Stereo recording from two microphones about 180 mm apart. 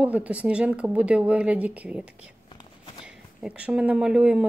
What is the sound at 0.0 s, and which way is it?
Speech, 5° right (ahead or behind).